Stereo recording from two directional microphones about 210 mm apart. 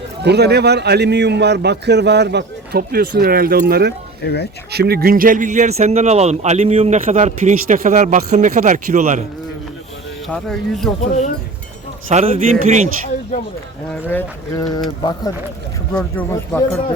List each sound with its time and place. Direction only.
0.2 s a man's voice: 50° right (ahead or behind)
4.2 s speech: 50° left (ahead or behind)
4.7 s speech: 50° right (ahead or behind)
10.2 s speech: centre (ahead or behind)
11.0 s speech: 35° left (ahead or behind)
12.0 s a man's voice: 30° right (ahead or behind)
13.3 s speech: 35° left (ahead or behind)
13.9 s speech: 10° left (ahead or behind)
16.1 s speech: 10° left (ahead or behind)